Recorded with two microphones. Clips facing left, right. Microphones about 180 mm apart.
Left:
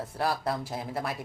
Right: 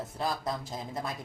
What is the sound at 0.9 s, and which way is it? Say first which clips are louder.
Speech: left 3 dB; 65° left (ahead or behind).